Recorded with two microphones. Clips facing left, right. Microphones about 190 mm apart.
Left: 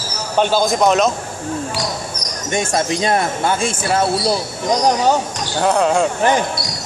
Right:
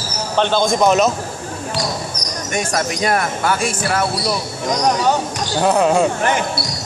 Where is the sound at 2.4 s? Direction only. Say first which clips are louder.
Left 3 dB; 25° left (ahead or behind).